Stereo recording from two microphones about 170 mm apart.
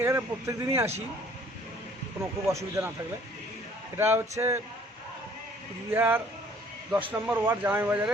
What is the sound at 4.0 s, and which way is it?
Speech, 15° right (ahead or behind).